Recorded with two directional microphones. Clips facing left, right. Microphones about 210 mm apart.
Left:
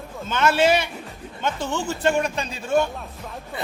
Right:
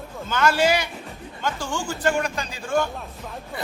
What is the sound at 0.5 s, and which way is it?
A man's voice, 25° left (ahead or behind).